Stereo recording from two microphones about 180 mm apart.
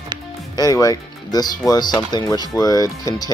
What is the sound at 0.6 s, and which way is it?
Speech, 20° left (ahead or behind).